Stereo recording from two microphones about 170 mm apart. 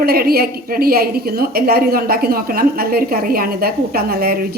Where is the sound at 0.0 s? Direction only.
65° right (ahead or behind).